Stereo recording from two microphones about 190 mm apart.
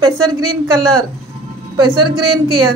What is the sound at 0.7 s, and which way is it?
Speech, centre (ahead or behind).